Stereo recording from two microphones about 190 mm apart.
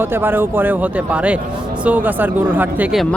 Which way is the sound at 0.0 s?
10° right (ahead or behind).